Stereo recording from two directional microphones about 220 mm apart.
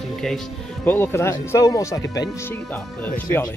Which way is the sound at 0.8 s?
10° left (ahead or behind).